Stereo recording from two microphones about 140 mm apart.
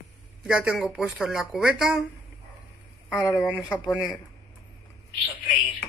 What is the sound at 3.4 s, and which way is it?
Speech, 10° right (ahead or behind).